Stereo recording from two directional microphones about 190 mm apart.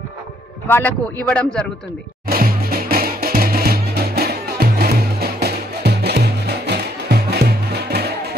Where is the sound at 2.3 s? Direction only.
50° right (ahead or behind).